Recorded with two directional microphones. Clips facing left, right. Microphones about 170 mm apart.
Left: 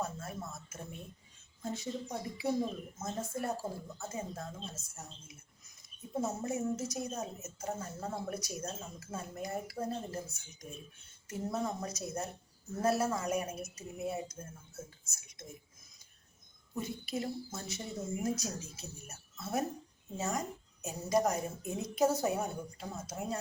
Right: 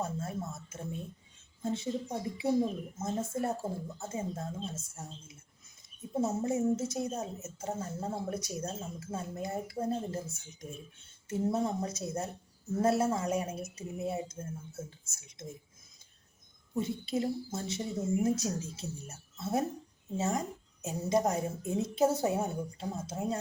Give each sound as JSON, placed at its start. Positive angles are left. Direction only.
{"t": 0.0, "sound": "a sound", "side_deg": -25}
{"t": 1.6, "sound": "a woman's voice", "side_deg": -25}
{"t": 6.1, "sound": "a woman's voice", "side_deg": -25}
{"t": 16.7, "sound": "a woman's voice", "side_deg": -25}